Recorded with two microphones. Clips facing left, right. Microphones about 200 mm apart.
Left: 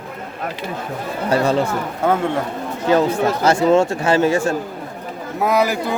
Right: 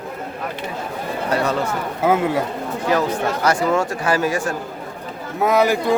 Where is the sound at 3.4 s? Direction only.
25° left (ahead or behind).